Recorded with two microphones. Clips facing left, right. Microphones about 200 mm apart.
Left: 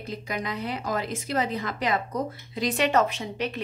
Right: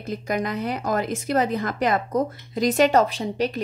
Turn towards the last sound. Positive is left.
turn(degrees=-35)  # may be behind; listen again after turning